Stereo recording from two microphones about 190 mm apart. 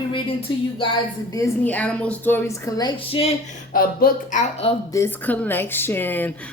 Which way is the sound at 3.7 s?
50° left (ahead or behind).